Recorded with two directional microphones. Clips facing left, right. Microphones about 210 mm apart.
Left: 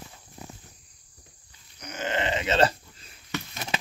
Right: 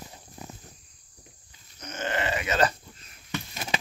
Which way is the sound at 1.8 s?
15° left (ahead or behind).